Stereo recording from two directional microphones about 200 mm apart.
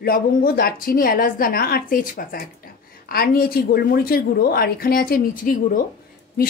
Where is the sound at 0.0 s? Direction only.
45° left (ahead or behind).